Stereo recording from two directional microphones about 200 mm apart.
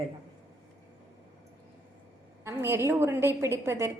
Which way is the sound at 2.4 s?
10° right (ahead or behind).